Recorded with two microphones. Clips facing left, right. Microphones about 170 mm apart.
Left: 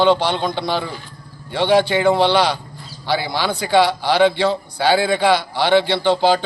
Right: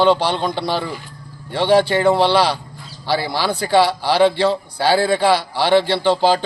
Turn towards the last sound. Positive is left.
turn(degrees=0)  # may be behind; listen again after turning